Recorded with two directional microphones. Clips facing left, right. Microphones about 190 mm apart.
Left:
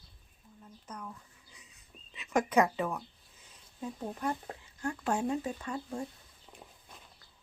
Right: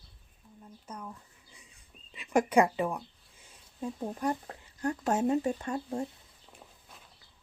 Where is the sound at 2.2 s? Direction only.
30° right (ahead or behind).